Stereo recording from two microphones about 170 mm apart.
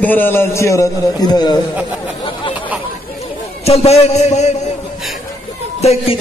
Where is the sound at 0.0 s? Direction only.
10° left (ahead or behind).